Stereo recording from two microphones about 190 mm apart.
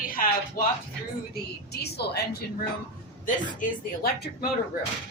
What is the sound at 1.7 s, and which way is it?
A woman's voice, 60° left (ahead or behind).